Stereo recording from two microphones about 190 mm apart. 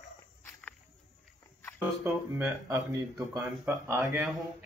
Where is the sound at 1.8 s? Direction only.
10° right (ahead or behind).